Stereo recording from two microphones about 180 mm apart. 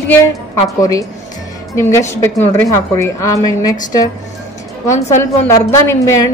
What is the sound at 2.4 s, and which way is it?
A woman's voice, 10° left (ahead or behind).